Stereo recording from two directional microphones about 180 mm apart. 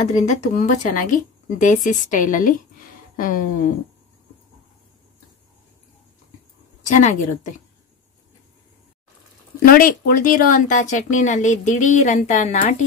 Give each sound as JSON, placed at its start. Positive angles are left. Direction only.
{"t": 0.0, "sound": "speech", "side_deg": 40}
{"t": 6.9, "sound": "speech", "side_deg": 45}
{"t": 9.7, "sound": "speech", "side_deg": 55}